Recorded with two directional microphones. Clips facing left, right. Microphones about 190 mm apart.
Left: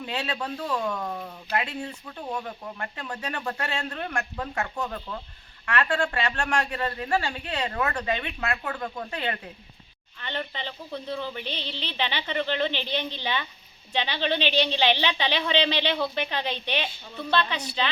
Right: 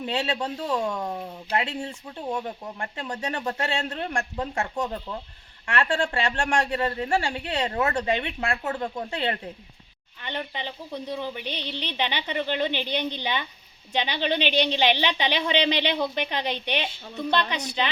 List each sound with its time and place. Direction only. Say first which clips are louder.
0.0 s speech: right 4 dB; 25° right (ahead or behind)
10.2 s speech: right 1 dB; 15° right (ahead or behind)